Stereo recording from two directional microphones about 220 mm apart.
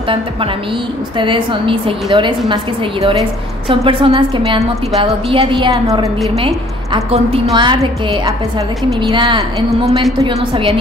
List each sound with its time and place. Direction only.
1.1 s a woman's voice: 20° right (ahead or behind)
9.1 s a woman's voice: 20° right (ahead or behind)